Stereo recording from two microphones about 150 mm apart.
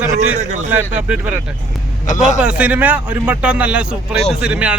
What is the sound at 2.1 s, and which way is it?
Speech, 55° left (ahead or behind).